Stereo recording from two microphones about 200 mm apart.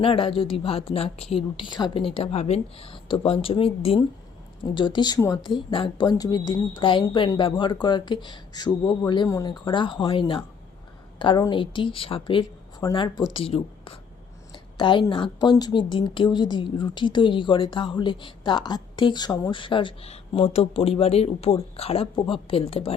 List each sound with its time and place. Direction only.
0.0 s a woman's voice: 25° left (ahead or behind)